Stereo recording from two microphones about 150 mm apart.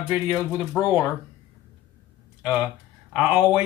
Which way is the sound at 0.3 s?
20° left (ahead or behind).